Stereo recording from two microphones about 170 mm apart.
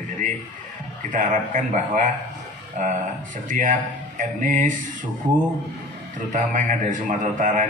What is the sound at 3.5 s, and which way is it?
Speech, 50° right (ahead or behind).